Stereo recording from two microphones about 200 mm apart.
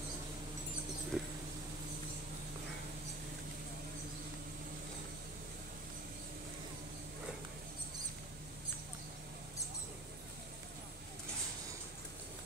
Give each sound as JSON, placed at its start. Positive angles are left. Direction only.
{"t": 1.1, "sound": "mouse", "side_deg": -5}